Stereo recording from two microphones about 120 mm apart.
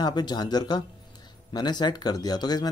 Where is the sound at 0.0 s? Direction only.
35° left (ahead or behind).